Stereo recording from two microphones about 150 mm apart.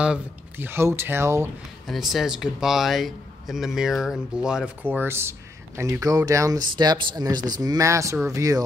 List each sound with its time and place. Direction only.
0.0 s speech: 10° right (ahead or behind)
1.9 s speech: centre (ahead or behind); by 8.6 s 20° right (ahead or behind)